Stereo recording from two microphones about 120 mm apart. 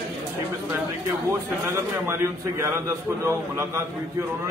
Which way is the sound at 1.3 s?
20° right (ahead or behind).